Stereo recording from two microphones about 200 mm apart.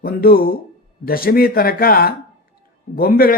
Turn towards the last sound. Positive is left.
turn(degrees=45)  # may be behind; listen again after turning